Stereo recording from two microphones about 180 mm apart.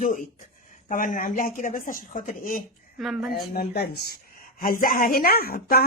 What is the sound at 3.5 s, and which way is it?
A woman's voice, 60° left (ahead or behind).